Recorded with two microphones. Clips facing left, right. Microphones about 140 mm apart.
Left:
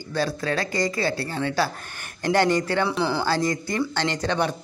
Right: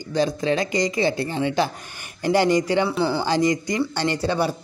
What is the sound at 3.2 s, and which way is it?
Speech, 15° right (ahead or behind).